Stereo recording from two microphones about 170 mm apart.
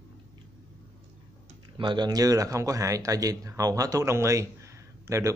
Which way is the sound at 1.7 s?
25° right (ahead or behind).